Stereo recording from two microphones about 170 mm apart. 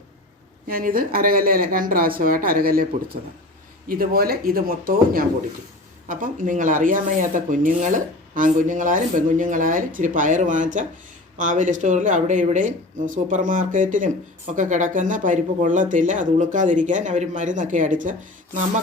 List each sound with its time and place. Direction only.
0.7 s speech: 55° right (ahead or behind)